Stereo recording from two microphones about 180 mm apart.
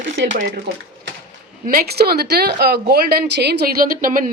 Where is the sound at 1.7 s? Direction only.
60° right (ahead or behind).